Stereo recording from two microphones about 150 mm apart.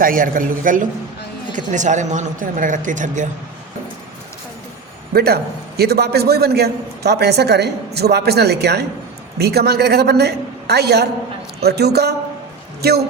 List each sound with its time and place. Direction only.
0.0 s speech: 70° right (ahead or behind)
5.1 s a man's voice: 90° right